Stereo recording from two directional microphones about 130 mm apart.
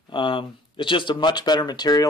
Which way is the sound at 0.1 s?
40° left (ahead or behind).